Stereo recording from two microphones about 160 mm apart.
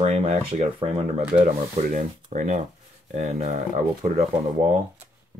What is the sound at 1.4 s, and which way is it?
Speech, 55° right (ahead or behind).